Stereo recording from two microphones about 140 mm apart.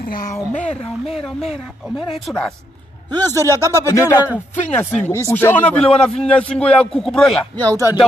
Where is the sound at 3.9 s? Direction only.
20° left (ahead or behind); by 7.4 s 5° left (ahead or behind).